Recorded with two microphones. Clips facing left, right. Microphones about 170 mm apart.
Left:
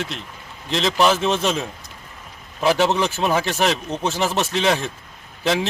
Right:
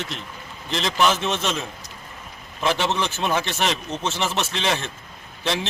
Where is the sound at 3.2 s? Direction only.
5° left (ahead or behind).